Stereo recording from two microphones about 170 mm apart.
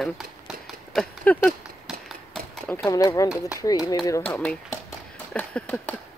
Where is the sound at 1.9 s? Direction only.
Centre (ahead or behind).